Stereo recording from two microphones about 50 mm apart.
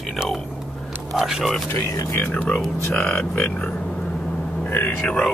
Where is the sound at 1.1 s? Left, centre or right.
Centre.